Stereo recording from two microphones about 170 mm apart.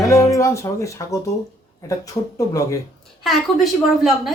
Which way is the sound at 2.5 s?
20° left (ahead or behind).